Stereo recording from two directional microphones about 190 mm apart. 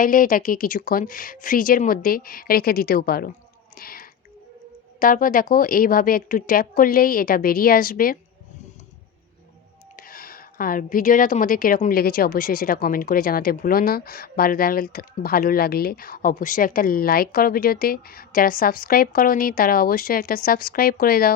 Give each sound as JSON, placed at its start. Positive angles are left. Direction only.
{"t": 0.0, "sound": "a woman's voice", "side_deg": 45}
{"t": 3.8, "sound": "whispering", "side_deg": 50}
{"t": 4.9, "sound": "a woman's voice", "side_deg": 45}
{"t": 9.9, "sound": "a woman's voice", "side_deg": 50}